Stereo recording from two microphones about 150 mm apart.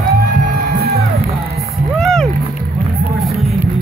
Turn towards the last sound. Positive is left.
turn(degrees=5)  # may be behind; listen again after turning